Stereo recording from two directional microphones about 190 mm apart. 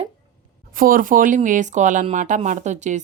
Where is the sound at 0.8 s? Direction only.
45° right (ahead or behind).